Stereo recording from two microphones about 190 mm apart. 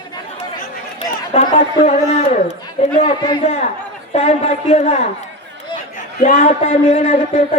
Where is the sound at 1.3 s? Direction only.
35° left (ahead or behind).